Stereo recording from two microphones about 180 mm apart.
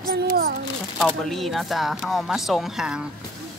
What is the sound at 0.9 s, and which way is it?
Speech, centre (ahead or behind).